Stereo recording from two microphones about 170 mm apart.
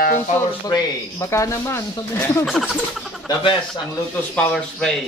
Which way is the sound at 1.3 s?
15° left (ahead or behind).